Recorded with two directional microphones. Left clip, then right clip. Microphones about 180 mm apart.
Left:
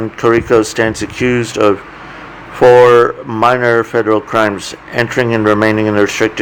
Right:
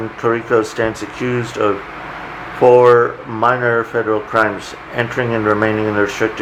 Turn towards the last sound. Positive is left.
turn(degrees=45)  # may be behind; listen again after turning